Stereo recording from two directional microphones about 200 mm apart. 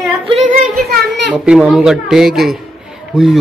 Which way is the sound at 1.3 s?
5° right (ahead or behind).